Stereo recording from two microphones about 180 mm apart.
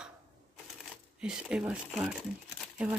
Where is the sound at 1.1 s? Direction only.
5° right (ahead or behind).